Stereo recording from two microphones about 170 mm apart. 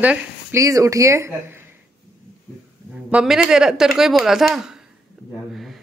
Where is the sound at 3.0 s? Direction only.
5° right (ahead or behind).